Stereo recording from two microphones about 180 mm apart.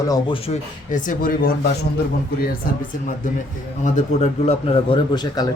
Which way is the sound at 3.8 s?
40° left (ahead or behind).